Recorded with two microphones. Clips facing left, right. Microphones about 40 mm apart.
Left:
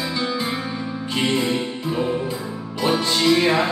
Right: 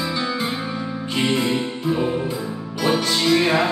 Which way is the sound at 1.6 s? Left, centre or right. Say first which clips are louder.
Right 2 dB; centre.